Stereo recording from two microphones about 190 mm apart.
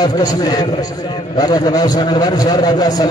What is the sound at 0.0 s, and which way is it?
A man's voice, 20° left (ahead or behind).